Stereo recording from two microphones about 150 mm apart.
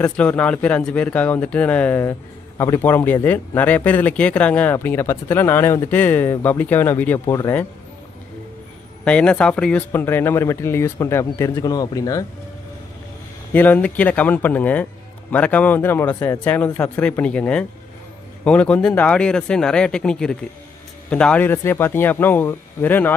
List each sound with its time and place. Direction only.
0.0 s speech: 10° left (ahead or behind)
9.0 s speech: 5° left (ahead or behind); by 12.3 s 25° left (ahead or behind)
13.5 s speech: 10° left (ahead or behind)